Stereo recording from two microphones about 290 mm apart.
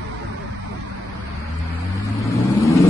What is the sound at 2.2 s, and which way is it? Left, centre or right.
Vehicle, centre.